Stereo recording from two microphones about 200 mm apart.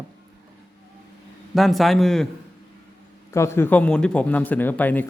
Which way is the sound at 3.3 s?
15° left (ahead or behind).